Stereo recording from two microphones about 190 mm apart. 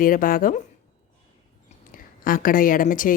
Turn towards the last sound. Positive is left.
turn(degrees=45)  # may be behind; listen again after turning